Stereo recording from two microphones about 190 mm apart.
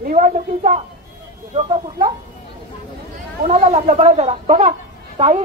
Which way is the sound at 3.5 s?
35° right (ahead or behind).